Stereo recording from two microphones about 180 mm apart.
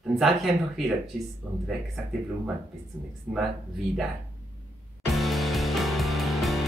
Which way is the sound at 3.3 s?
Centre (ahead or behind).